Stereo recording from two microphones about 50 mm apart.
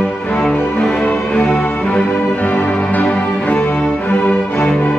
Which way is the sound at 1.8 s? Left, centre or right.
Left.